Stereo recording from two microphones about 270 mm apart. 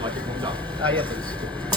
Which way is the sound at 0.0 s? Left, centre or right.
Centre.